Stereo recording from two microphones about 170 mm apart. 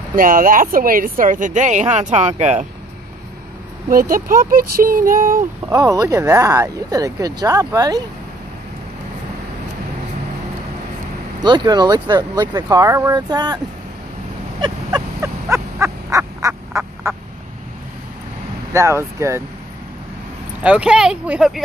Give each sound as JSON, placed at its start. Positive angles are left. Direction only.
{"t": 0.1, "sound": "speech", "side_deg": -55}
{"t": 3.9, "sound": "speech", "side_deg": -55}
{"t": 5.7, "sound": "speech", "side_deg": -20}
{"t": 11.4, "sound": "speech", "side_deg": -25}
{"t": 14.6, "sound": "a sound", "side_deg": -25}
{"t": 15.5, "sound": "fowl", "side_deg": -15}
{"t": 18.7, "sound": "speech", "side_deg": -15}
{"t": 20.6, "sound": "speech", "side_deg": -5}